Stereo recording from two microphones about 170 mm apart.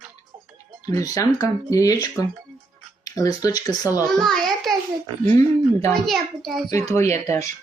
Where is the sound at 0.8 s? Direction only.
20° left (ahead or behind).